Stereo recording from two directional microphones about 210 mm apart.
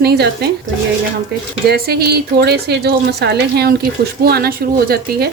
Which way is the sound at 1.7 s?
50° right (ahead or behind).